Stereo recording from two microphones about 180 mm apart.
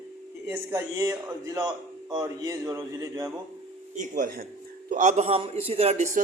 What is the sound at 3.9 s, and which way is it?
A man's voice, 45° right (ahead or behind).